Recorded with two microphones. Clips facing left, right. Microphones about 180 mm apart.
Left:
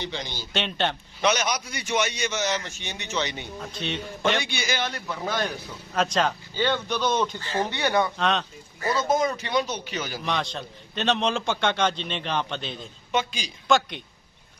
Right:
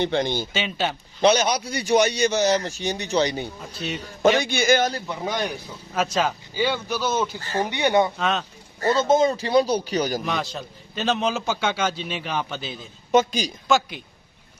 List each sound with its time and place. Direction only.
0.0 s a man's voice: 55° right (ahead or behind)
0.5 s a man's voice: 5° right (ahead or behind)
1.2 s a man's voice: 30° right (ahead or behind)
3.6 s a man's voice: 5° right (ahead or behind)
4.4 s a man's voice: 45° right (ahead or behind)
5.0 s a man's voice: 20° right (ahead or behind)
5.9 s a man's voice: 5° right (ahead or behind)
8.2 s a man's voice: 5° right (ahead or behind)
8.9 s a man's voice: 25° right (ahead or behind)
10.2 s a man's voice: centre (ahead or behind)
13.1 s a man's voice: 40° right (ahead or behind)
13.7 s a man's voice: centre (ahead or behind)